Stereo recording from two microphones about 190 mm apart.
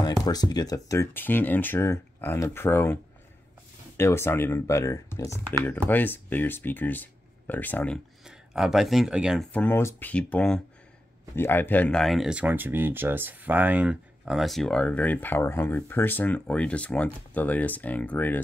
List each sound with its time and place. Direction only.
0.2 s speech: 20° left (ahead or behind)